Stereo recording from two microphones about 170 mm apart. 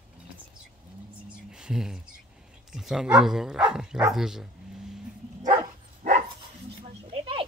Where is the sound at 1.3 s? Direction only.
5° right (ahead or behind).